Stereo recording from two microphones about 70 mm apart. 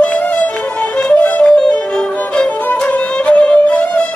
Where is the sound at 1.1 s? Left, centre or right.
Left.